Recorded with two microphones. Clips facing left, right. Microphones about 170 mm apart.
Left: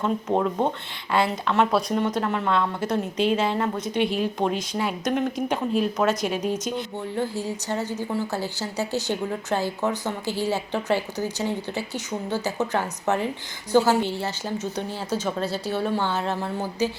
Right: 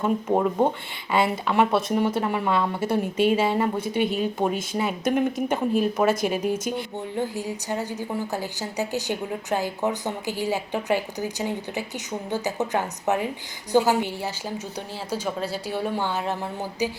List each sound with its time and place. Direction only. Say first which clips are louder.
0.0 s a woman's voice: right 1 dB; 10° right (ahead or behind)